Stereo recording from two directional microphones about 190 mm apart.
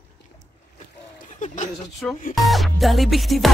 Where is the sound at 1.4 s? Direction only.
40° left (ahead or behind).